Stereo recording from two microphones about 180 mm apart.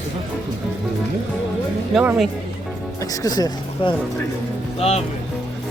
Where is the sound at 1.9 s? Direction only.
5° right (ahead or behind).